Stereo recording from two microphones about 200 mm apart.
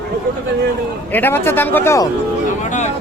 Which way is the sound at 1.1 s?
10° left (ahead or behind).